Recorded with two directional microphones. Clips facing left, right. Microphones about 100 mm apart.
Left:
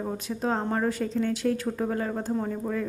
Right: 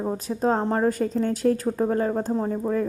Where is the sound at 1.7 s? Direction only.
30° right (ahead or behind).